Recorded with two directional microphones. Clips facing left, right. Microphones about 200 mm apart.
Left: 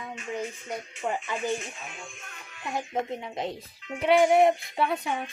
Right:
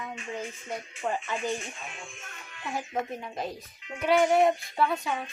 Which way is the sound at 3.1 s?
20° left (ahead or behind).